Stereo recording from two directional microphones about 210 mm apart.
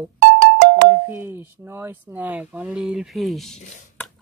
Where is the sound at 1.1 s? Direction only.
10° right (ahead or behind).